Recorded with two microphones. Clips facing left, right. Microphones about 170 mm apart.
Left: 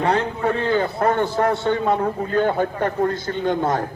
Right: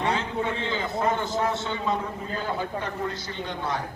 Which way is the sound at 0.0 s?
60° left (ahead or behind).